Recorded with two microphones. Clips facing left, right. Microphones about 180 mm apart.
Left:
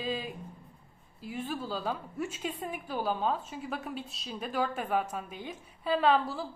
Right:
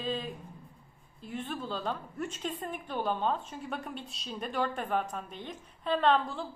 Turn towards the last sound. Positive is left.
turn(degrees=5)  # may be behind; listen again after turning